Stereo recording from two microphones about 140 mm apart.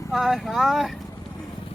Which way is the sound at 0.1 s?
Centre (ahead or behind).